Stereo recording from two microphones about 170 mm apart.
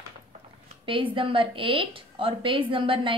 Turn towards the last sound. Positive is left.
turn(degrees=-30)  # may be behind; listen again after turning